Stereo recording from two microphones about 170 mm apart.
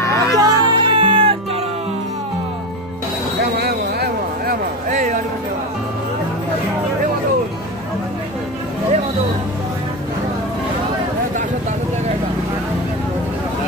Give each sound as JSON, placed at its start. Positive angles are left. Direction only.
{"t": 0.0, "sound": "music", "side_deg": 15}
{"t": 0.4, "sound": "music", "side_deg": -25}
{"t": 3.5, "sound": "a sound", "side_deg": -70}
{"t": 4.8, "sound": "music", "side_deg": -45}